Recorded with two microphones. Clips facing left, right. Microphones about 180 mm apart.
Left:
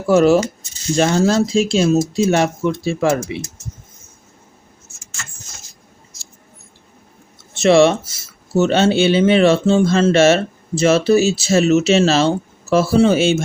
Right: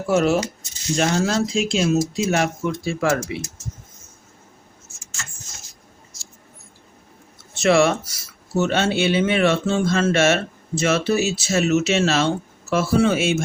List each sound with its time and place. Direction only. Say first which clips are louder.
0.1 s speech: left 6 dB; 35° left (ahead or behind)
7.5 s speech: left 5 dB; 25° left (ahead or behind)